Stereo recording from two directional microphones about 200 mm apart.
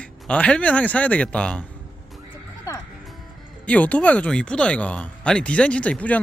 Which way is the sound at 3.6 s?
5° left (ahead or behind).